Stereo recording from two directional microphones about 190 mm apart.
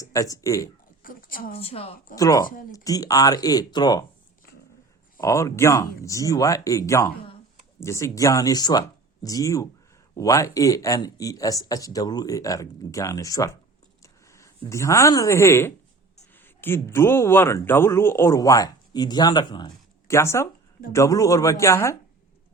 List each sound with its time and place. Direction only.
0.0 s speech: 15° left (ahead or behind)
1.0 s speech: 50° left (ahead or behind)
1.5 s a woman's voice: 30° left (ahead or behind)
2.1 s speech: 20° left (ahead or behind)
2.5 s speech: 50° left (ahead or behind)
2.7 s speech: 20° left (ahead or behind)
5.2 s speech: 15° left (ahead or behind)